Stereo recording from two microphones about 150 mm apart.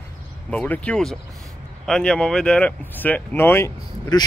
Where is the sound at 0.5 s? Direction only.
10° left (ahead or behind).